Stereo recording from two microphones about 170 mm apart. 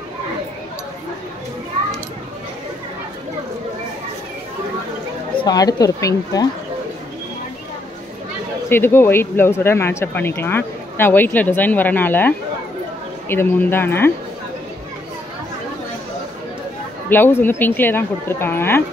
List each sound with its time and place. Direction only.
5.4 s a woman's voice: 20° left (ahead or behind)
8.6 s speech: 15° left (ahead or behind)
17.1 s speech: 10° left (ahead or behind)